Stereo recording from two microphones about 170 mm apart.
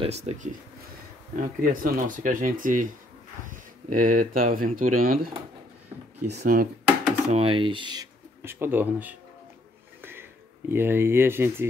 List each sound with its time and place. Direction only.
0.0 s speech: 40° right (ahead or behind)
1.4 s speech: 55° right (ahead or behind)
6.2 s speech: 70° right (ahead or behind)
7.2 s speech: 35° right (ahead or behind)
8.4 s speech: 15° right (ahead or behind)
10.7 s speech: 15° right (ahead or behind)